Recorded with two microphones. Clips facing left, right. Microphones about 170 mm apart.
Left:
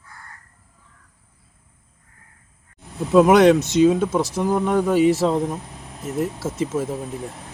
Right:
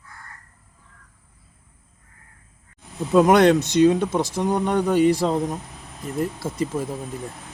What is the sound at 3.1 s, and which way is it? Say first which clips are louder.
Speech: left 2 dB; centre (ahead or behind).